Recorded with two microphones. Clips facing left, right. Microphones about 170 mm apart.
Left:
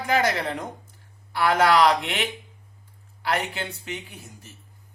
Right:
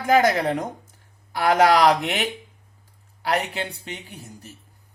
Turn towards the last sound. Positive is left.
turn(degrees=-35)  # may be behind; listen again after turning